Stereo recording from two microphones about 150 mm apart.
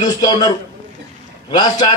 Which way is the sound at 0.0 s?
30° left (ahead or behind).